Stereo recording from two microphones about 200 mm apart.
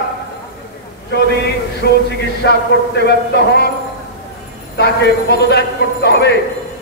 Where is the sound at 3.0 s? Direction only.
55° left (ahead or behind).